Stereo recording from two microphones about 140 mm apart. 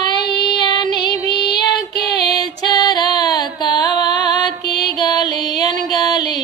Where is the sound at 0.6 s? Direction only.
30° left (ahead or behind).